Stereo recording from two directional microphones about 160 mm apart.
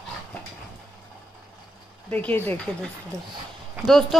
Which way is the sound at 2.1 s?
10° left (ahead or behind).